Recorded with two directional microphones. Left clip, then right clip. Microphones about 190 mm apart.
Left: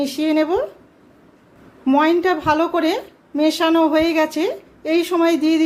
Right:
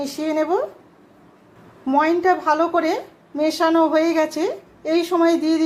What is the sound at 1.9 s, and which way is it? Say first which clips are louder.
A woman's voice: left 1 dB; 20° left (ahead or behind).